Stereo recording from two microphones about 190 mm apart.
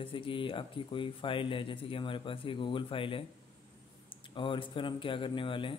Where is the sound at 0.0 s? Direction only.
25° left (ahead or behind).